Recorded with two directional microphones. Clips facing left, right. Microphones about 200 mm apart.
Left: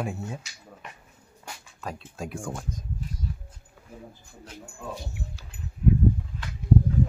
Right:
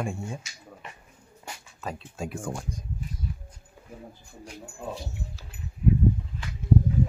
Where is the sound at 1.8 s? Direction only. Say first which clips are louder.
Right 1 dB; centre (ahead or behind).